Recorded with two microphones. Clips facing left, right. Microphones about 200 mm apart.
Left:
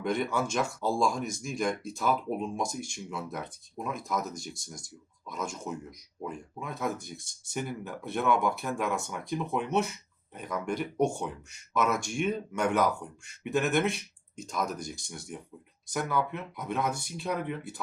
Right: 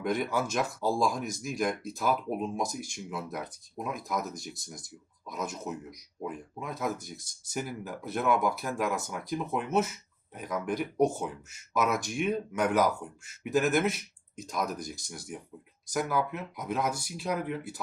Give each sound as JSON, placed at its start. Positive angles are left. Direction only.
{"t": 0.0, "sound": "speech", "side_deg": -5}